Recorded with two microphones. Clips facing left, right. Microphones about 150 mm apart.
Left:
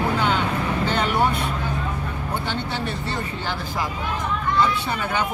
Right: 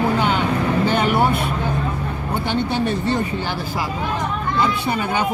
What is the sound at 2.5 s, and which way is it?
A woman's voice, 15° right (ahead or behind).